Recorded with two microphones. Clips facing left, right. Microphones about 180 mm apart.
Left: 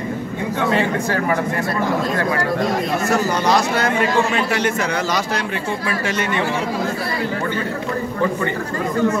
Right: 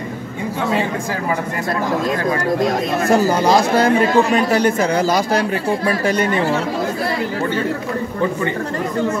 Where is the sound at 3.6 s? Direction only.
35° right (ahead or behind).